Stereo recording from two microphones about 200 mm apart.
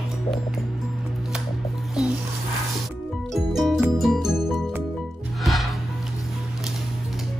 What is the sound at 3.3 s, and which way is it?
Music, centre (ahead or behind).